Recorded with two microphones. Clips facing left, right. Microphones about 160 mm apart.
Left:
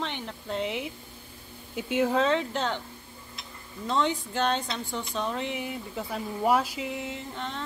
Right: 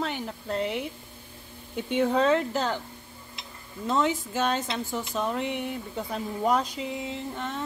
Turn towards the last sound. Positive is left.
turn(degrees=-5)  # may be behind; listen again after turning